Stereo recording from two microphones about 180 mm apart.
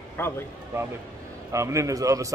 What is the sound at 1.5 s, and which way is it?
Speech, 15° right (ahead or behind).